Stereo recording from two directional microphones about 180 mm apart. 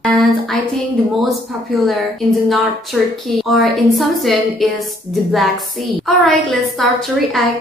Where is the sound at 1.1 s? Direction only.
Centre (ahead or behind).